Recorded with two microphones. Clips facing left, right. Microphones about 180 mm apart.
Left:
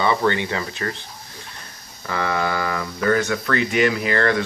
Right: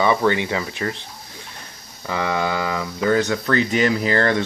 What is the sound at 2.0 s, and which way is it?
Speech, 15° right (ahead or behind).